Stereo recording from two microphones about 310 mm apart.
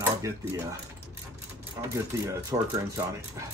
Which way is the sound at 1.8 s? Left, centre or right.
Centre.